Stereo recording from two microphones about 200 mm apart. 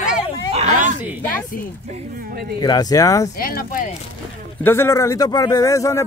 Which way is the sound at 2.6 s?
20° left (ahead or behind).